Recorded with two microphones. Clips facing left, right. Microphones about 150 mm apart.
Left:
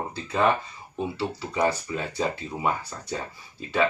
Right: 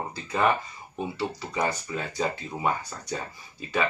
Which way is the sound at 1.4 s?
5° left (ahead or behind).